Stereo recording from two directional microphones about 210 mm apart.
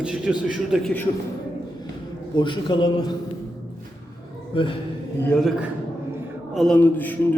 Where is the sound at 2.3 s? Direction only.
20° left (ahead or behind).